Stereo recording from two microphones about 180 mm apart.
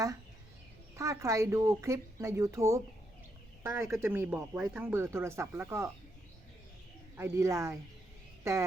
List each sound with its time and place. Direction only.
0.9 s speech: 15° right (ahead or behind)
7.2 s speech: 15° right (ahead or behind)